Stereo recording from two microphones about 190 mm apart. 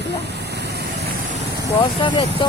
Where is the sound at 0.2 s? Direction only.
60° right (ahead or behind).